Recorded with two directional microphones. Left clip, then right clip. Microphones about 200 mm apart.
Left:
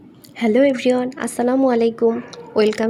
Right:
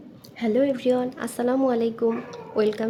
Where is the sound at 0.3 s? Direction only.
40° left (ahead or behind).